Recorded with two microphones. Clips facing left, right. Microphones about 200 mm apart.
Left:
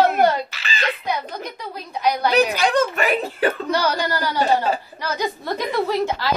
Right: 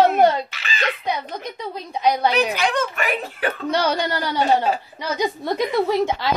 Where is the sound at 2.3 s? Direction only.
35° left (ahead or behind).